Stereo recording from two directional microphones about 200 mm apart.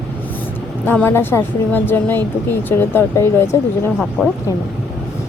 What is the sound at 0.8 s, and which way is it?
A woman's voice, 10° left (ahead or behind).